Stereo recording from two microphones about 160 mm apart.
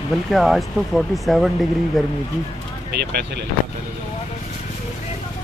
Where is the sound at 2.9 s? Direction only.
90° right.